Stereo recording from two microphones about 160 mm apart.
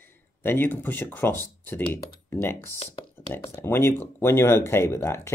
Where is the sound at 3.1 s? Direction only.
15° left (ahead or behind).